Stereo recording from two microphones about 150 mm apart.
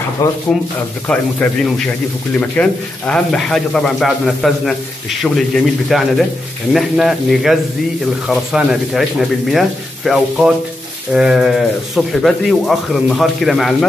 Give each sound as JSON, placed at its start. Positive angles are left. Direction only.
{"t": 0.2, "sound": "speech", "side_deg": 20}
{"t": 1.0, "sound": "speech", "side_deg": 10}